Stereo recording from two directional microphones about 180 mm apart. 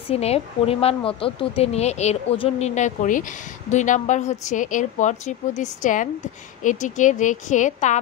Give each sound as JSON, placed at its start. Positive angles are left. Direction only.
{"t": 0.1, "sound": "a woman's voice", "side_deg": 35}